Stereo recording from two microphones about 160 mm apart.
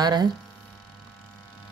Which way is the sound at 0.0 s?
25° right (ahead or behind).